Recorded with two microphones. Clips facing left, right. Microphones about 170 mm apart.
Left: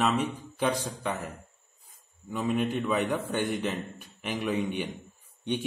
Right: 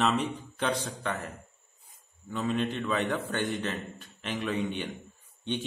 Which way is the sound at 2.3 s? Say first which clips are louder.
Left 2 dB; 10° left (ahead or behind).